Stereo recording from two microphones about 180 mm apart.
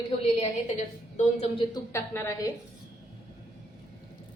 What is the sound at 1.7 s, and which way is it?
Speech, 15° left (ahead or behind).